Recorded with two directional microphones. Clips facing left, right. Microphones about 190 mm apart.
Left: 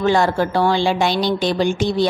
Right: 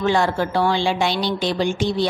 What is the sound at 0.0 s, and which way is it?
A woman's voice, 40° left (ahead or behind).